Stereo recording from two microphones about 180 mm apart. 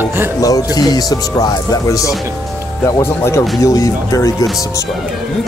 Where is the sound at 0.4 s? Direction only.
20° left (ahead or behind).